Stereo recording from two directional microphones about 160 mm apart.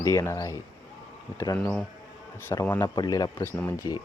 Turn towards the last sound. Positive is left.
turn(degrees=20)  # may be behind; listen again after turning